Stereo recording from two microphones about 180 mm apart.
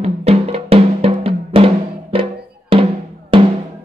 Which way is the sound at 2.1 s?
30° right (ahead or behind).